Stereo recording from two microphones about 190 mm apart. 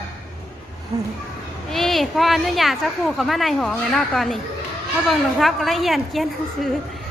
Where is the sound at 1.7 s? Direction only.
Centre (ahead or behind).